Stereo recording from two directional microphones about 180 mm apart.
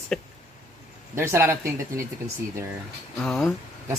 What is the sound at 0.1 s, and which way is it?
Speech, 5° left (ahead or behind).